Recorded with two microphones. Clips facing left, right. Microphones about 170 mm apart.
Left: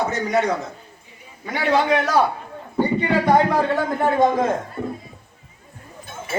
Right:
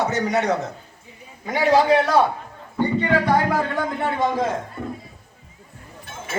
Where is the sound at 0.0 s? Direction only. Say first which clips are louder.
Left 1 dB; 75° right (ahead or behind).